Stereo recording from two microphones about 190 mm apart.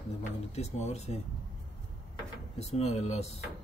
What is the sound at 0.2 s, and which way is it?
Speech, 35° left (ahead or behind).